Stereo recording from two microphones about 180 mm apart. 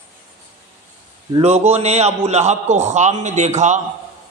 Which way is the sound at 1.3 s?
35° right (ahead or behind).